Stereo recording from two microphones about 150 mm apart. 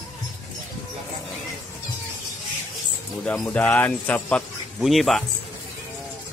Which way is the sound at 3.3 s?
10° left (ahead or behind).